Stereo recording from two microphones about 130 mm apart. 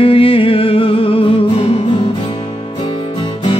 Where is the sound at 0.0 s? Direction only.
45° left (ahead or behind).